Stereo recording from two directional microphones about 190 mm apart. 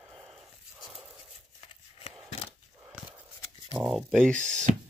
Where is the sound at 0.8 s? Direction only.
Centre (ahead or behind).